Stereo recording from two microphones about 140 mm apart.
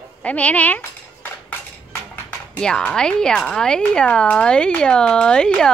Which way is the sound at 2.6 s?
5° left (ahead or behind).